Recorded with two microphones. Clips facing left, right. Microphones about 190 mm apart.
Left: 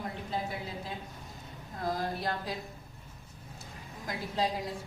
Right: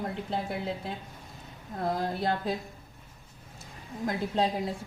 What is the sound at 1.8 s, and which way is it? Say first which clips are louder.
Speech: right 4 dB; 60° right (ahead or behind).